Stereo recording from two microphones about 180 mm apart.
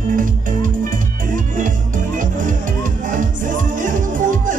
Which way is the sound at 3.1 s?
45° right (ahead or behind).